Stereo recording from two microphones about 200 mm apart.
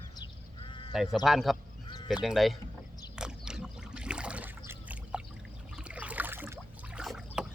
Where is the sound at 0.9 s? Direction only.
Centre (ahead or behind).